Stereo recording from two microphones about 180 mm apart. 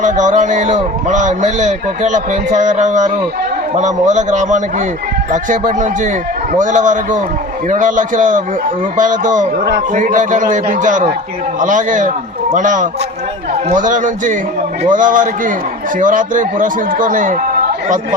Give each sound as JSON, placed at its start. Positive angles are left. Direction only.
{"t": 0.0, "sound": "a man's voice", "side_deg": -45}